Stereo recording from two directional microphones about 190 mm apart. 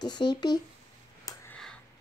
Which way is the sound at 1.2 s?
10° left (ahead or behind).